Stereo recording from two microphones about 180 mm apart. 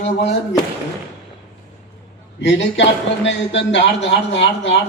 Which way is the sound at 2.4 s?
90° left.